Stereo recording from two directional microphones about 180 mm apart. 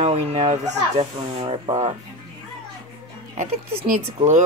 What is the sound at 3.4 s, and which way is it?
Speech, 45° right (ahead or behind).